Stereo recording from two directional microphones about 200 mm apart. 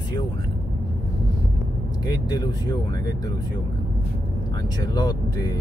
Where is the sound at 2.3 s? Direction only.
20° left (ahead or behind).